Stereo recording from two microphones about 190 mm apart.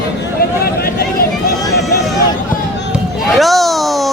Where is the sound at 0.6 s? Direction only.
55° left (ahead or behind).